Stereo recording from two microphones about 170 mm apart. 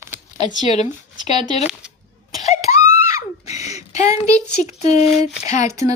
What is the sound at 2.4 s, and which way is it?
Screaming, 40° left (ahead or behind).